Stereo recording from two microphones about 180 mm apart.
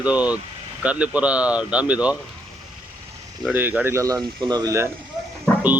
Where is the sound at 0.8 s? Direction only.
5° right (ahead or behind).